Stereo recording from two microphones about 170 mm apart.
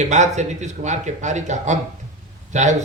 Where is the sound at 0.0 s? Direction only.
45° right (ahead or behind).